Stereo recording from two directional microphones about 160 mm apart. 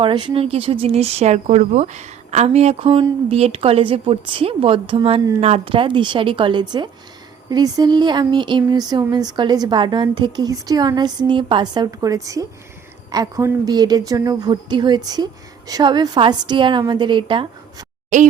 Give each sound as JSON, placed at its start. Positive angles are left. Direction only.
{"t": 0.0, "sound": "speech", "side_deg": -30}
{"t": 18.1, "sound": "speech", "side_deg": -50}